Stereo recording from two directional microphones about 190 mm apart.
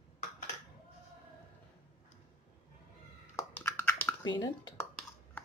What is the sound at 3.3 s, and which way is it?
Computer keyboard, 10° left (ahead or behind).